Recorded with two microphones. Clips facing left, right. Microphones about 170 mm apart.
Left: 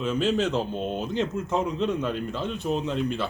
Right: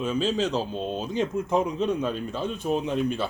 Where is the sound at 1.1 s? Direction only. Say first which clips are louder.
Right 3 dB; 15° right (ahead or behind).